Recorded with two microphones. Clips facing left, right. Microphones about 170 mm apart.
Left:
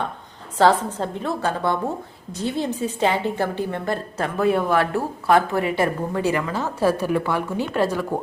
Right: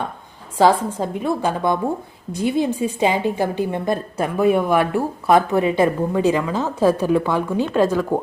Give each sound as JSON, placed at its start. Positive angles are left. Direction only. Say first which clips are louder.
{"t": 0.6, "sound": "a woman's voice", "louder": "right 2 dB", "side_deg": -10}